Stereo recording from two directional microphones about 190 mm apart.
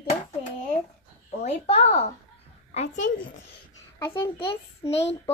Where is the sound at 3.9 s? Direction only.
15° left (ahead or behind).